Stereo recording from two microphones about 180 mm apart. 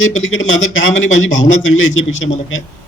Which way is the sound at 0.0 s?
90° left.